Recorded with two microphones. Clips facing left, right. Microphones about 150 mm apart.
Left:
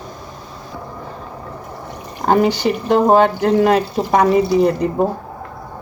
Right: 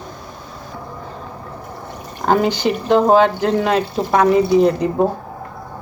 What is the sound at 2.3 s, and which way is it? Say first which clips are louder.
Speech: left 1 dB; centre (ahead or behind).